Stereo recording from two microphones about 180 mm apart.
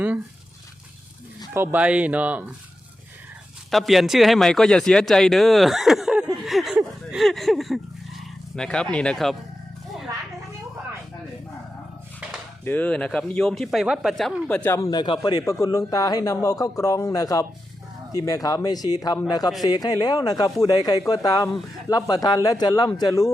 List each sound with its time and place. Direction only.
1.5 s speech: 10° right (ahead or behind)
3.7 s speech: centre (ahead or behind)
6.4 s a sound: centre (ahead or behind)
7.2 s speech: centre (ahead or behind)
12.6 s speech: 10° left (ahead or behind)